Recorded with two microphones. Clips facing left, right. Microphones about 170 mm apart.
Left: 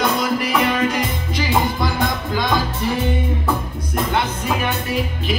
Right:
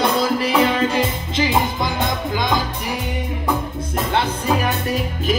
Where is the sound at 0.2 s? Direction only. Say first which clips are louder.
Right 2 dB; 30° right (ahead or behind).